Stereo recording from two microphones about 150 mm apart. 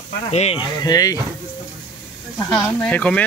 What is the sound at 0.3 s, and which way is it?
Speech, 45° left (ahead or behind).